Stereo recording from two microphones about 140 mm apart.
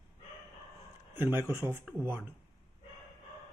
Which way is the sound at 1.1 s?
15° right (ahead or behind).